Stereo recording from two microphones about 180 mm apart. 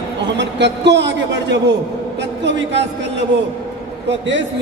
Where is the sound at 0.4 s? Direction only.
75° right (ahead or behind).